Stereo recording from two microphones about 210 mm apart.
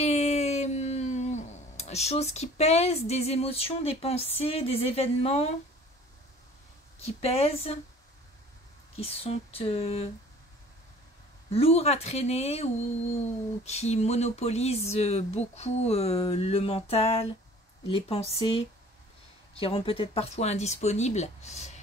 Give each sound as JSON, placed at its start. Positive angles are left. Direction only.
{"t": 0.0, "sound": "a sound", "side_deg": 30}
{"t": 4.4, "sound": "speech", "side_deg": 25}
{"t": 7.1, "sound": "speech", "side_deg": 30}
{"t": 8.9, "sound": "speech", "side_deg": 30}
{"t": 11.5, "sound": "speech", "side_deg": 30}
{"t": 13.7, "sound": "speech", "side_deg": 30}